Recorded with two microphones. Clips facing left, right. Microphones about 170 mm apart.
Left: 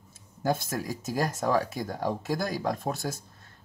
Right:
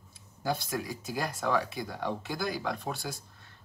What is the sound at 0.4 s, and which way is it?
Speech, 45° left (ahead or behind).